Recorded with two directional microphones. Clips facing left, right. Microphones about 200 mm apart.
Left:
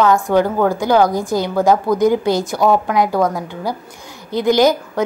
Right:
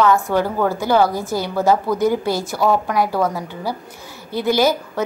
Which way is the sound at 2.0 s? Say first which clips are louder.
Left 4 dB; 15° left (ahead or behind).